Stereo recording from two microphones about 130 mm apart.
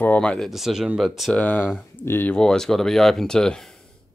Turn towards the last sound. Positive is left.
turn(degrees=5)  # may be behind; listen again after turning